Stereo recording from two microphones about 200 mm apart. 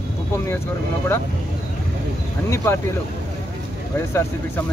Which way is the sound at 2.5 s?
15° left (ahead or behind).